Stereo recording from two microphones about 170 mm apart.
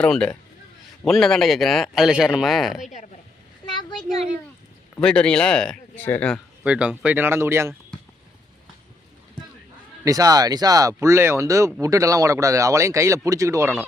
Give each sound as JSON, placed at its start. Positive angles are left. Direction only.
{"t": 0.0, "sound": "speech", "side_deg": 5}
{"t": 4.9, "sound": "speech", "side_deg": 5}
{"t": 6.7, "sound": "speech", "side_deg": -5}
{"t": 10.0, "sound": "speech", "side_deg": -20}